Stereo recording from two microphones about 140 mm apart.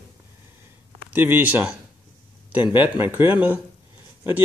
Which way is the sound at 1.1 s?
15° right (ahead or behind).